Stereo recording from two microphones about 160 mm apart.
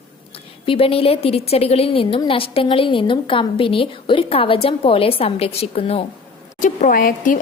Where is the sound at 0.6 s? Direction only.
35° left (ahead or behind).